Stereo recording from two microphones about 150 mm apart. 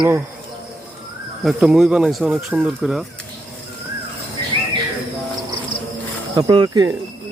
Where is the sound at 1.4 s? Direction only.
Centre (ahead or behind).